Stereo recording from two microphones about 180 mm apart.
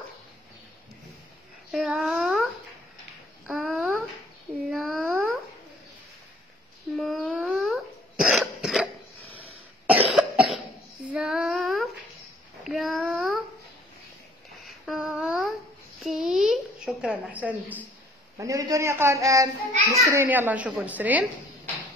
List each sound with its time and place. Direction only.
1.7 s babbling: centre (ahead or behind)
3.4 s a sound: centre (ahead or behind)
7.0 s dog: centre (ahead or behind)
9.4 s cough: 10° right (ahead or behind)
11.1 s female singing: 5° right (ahead or behind)
12.6 s child singing: centre (ahead or behind)
14.9 s a sound: 5° right (ahead or behind)
18.4 s a woman's voice: 20° right (ahead or behind)